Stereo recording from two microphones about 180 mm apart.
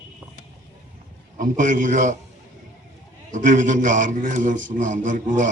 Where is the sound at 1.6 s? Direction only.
45° right (ahead or behind).